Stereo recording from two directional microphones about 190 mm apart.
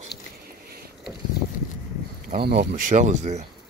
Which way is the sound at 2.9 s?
40° right (ahead or behind).